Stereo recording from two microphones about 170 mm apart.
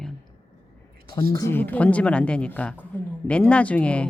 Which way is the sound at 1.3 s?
20° left (ahead or behind).